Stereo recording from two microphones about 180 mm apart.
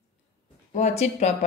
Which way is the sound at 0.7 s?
40° left (ahead or behind).